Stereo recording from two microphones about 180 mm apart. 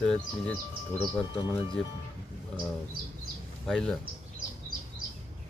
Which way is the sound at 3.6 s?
5° left (ahead or behind).